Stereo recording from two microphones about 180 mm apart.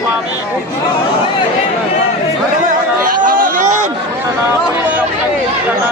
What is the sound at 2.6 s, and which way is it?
Chatter, 50° right (ahead or behind).